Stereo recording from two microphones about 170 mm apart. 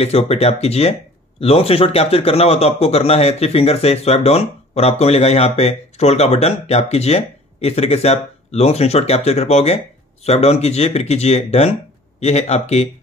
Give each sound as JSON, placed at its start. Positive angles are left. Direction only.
{"t": 0.0, "sound": "speech", "side_deg": 40}